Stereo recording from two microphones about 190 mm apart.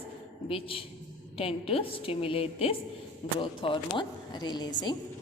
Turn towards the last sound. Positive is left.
turn(degrees=25)  # may be behind; listen again after turning